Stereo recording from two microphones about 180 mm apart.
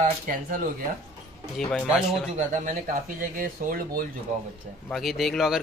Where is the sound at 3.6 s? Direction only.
45° right (ahead or behind).